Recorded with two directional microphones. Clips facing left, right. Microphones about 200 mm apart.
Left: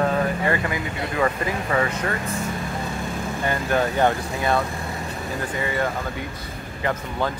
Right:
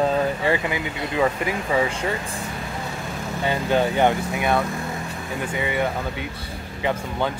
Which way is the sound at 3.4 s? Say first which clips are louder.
Right 2 dB; 20° right (ahead or behind).